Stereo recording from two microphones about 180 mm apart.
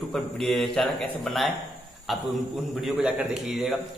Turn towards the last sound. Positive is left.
turn(degrees=-5)  # may be behind; listen again after turning